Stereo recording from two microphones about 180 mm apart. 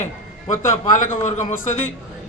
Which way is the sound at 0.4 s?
45° left (ahead or behind).